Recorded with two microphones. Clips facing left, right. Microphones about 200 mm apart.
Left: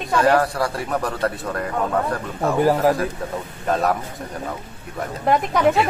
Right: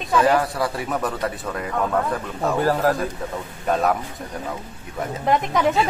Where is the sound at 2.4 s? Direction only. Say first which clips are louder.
Left 3 dB; 10° left (ahead or behind).